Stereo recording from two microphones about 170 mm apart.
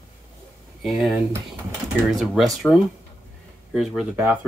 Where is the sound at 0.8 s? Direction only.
Centre (ahead or behind).